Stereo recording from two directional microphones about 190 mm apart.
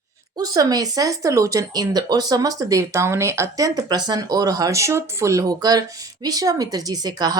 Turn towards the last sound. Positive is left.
turn(degrees=-20)  # may be behind; listen again after turning